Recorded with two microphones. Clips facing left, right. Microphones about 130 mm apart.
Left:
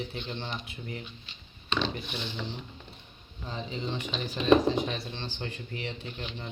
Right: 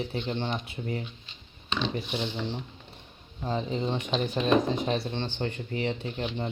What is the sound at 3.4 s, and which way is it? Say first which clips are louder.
Speech: right 6 dB; 45° right (ahead or behind).